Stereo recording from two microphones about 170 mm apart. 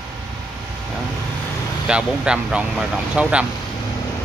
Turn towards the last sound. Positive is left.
turn(degrees=-5)  # may be behind; listen again after turning